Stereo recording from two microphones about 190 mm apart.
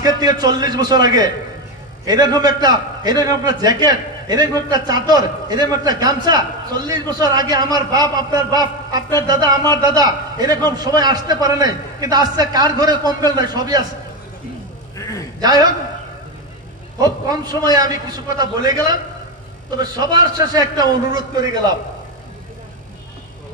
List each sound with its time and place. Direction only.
0.0 s a man's voice: 20° right (ahead or behind)
15.0 s a sound: 15° left (ahead or behind)
17.0 s a man's voice: 20° right (ahead or behind)